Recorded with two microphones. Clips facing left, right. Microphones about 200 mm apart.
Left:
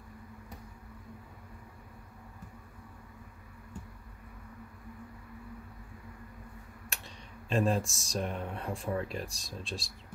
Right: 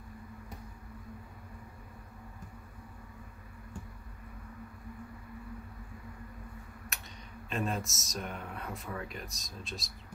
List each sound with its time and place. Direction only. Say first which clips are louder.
7.4 s speech: left 6 dB; 30° left (ahead or behind)